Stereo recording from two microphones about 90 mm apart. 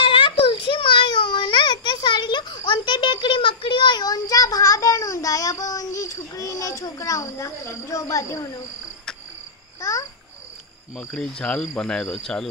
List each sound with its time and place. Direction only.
0.0 s a sound: 75° left (ahead or behind); by 8.5 s 35° left (ahead or behind)
9.8 s babbling: 35° left (ahead or behind)
11.0 s speech: 10° left (ahead or behind)